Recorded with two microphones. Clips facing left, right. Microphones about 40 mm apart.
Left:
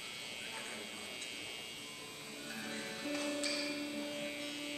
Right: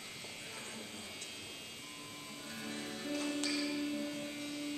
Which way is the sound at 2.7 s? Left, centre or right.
Centre.